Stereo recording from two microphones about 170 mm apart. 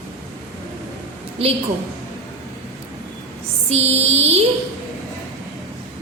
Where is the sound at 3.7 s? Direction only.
40° right (ahead or behind).